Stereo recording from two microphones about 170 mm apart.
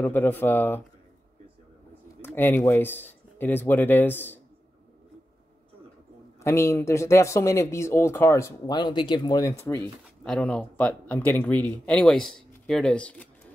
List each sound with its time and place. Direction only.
0.0 s speech: 10° left (ahead or behind)
2.2 s speech: 10° left (ahead or behind)
6.4 s speech: 15° left (ahead or behind)
10.2 s speech: 5° left (ahead or behind)